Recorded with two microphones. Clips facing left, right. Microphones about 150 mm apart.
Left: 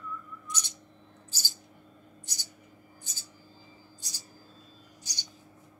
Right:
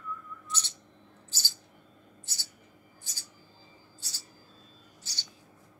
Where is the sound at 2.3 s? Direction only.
15° left (ahead or behind).